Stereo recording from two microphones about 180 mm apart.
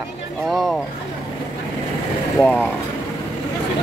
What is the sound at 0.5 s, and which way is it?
Speech, centre (ahead or behind).